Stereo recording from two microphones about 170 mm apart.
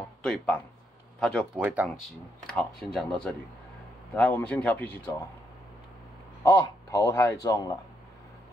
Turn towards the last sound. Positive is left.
turn(degrees=20)  # may be behind; listen again after turning